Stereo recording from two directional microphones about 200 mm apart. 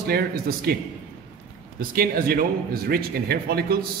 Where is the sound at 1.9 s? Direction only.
50° right (ahead or behind).